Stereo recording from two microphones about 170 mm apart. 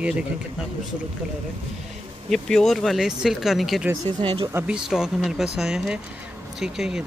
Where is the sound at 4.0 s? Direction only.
25° right (ahead or behind).